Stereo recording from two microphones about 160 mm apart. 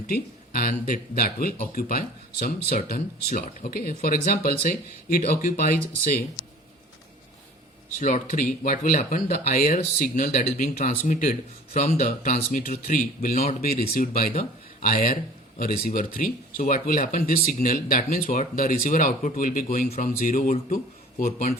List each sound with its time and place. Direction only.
0.1 s a man's voice: 65° left (ahead or behind)
7.9 s a man's voice: 55° left (ahead or behind)
13.6 s a man's voice: 70° left (ahead or behind)